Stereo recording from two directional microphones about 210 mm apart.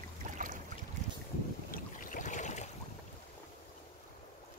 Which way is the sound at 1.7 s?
40° left (ahead or behind).